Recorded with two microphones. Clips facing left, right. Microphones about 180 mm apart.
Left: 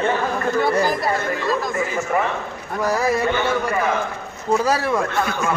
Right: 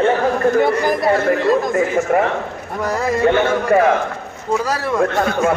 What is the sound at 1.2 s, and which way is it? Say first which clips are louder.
Speech: right 7 dB; 55° right (ahead or behind).